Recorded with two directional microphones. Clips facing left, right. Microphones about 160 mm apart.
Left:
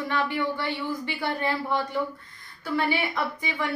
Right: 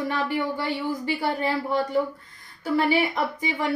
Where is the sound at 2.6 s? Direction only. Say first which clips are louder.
Right 4 dB; 40° right (ahead or behind).